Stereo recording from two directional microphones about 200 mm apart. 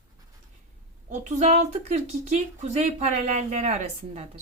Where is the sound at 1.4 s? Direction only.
40° right (ahead or behind).